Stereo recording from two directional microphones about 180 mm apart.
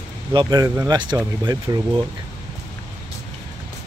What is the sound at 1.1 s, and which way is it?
Speech, 10° right (ahead or behind).